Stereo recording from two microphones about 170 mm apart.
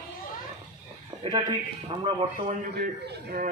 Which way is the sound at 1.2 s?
30° right (ahead or behind).